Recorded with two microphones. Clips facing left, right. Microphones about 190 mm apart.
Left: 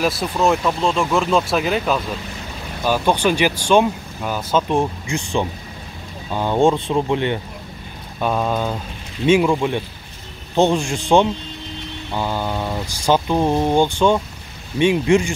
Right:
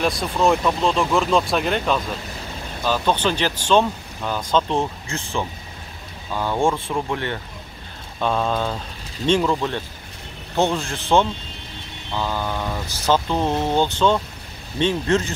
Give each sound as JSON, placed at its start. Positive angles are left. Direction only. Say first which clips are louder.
{"t": 0.0, "sound": "speech", "louder": "left 1 dB", "side_deg": 5}